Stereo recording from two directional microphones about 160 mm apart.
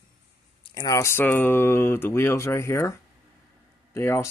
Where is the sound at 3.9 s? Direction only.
15° left (ahead or behind).